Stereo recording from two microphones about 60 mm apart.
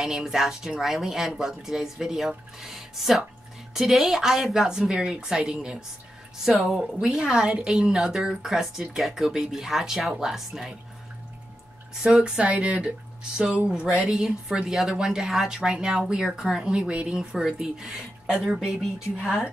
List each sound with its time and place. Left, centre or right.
0.0 s a woman's voice: centre
6.4 s a woman's voice: centre
12.2 s a woman's voice: centre